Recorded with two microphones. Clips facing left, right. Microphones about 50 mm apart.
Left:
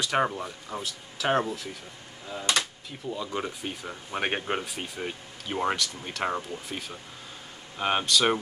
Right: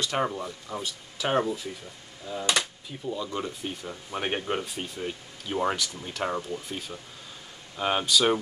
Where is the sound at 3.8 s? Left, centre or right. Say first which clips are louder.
Left 3 dB; left.